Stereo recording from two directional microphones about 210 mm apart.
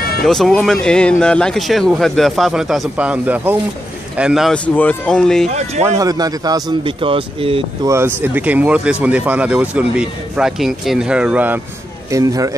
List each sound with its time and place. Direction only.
0.2 s speech: centre (ahead or behind)
5.9 s speech: 20° right (ahead or behind)
7.9 s speech: 10° right (ahead or behind)